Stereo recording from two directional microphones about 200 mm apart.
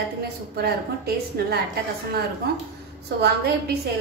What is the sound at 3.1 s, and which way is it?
Speech, 55° right (ahead or behind).